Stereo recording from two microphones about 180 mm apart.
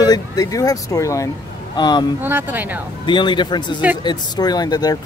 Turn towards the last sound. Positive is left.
turn(degrees=20)  # may be behind; listen again after turning